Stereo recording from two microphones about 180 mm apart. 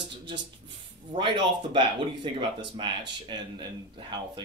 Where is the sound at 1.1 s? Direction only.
25° right (ahead or behind).